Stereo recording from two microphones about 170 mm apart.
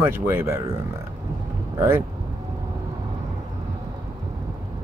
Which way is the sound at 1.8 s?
15° right (ahead or behind).